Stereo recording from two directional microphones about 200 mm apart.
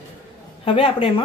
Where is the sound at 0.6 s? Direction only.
25° left (ahead or behind).